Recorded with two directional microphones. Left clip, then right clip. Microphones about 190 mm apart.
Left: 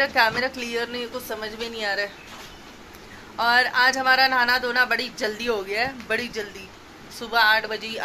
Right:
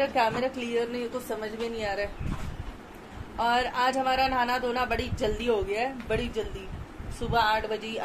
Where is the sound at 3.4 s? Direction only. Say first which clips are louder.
Left 6 dB; 5° right (ahead or behind).